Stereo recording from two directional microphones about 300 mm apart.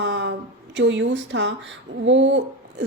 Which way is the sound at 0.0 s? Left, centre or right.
Right.